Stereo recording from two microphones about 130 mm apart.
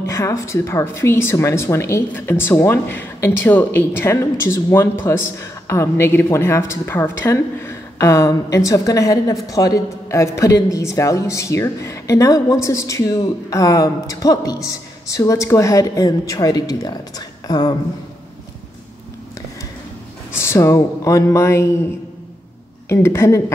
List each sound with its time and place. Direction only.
0.0 s speech: 20° left (ahead or behind)
20.3 s speech: 20° left (ahead or behind)
22.8 s speech: 20° left (ahead or behind)